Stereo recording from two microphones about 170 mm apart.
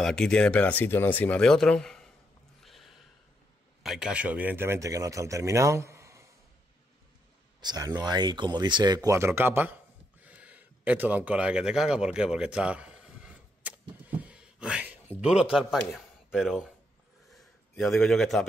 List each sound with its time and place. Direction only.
0.0 s speech: 5° left (ahead or behind)
2.6 s snort: centre (ahead or behind)
3.8 s speech: 5° right (ahead or behind)
7.6 s speech: 25° right (ahead or behind)
10.2 s a sound: 10° right (ahead or behind)
15.2 s speech: 5° right (ahead or behind)
17.3 s a sound: centre (ahead or behind)